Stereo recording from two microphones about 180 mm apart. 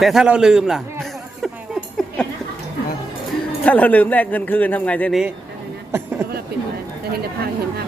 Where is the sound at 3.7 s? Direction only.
10° left (ahead or behind).